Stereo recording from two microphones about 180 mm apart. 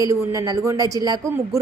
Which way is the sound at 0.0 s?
20° right (ahead or behind).